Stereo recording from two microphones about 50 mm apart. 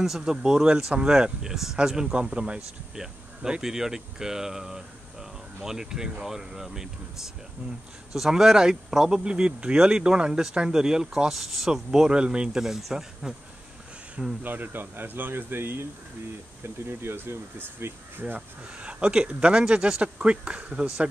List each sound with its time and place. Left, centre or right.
0.0 s speech: centre
8.1 s speech: centre
14.4 s speech: right
18.8 s speech: right